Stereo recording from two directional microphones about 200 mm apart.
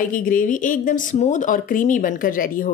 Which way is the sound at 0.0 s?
45° left (ahead or behind).